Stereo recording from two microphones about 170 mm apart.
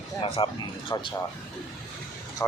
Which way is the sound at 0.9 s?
20° left (ahead or behind).